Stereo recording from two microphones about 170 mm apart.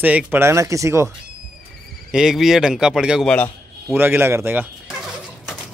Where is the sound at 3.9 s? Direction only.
10° right (ahead or behind).